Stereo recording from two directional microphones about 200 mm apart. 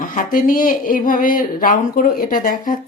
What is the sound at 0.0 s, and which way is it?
Speech, 40° left (ahead or behind).